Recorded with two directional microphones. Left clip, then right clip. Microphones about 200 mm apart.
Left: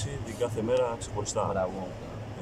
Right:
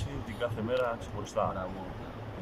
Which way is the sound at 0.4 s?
15° left (ahead or behind).